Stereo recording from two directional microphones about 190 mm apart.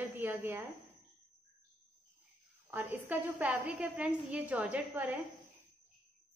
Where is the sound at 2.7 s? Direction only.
10° right (ahead or behind).